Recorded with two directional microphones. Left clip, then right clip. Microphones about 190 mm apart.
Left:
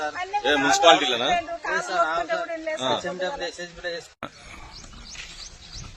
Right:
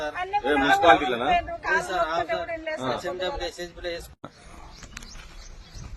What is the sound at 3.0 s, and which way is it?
Speech, 20° right (ahead or behind).